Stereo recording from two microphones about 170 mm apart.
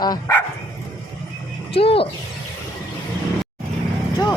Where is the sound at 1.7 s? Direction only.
35° left (ahead or behind).